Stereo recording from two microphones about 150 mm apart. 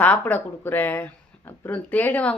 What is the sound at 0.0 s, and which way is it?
Speech, 10° left (ahead or behind).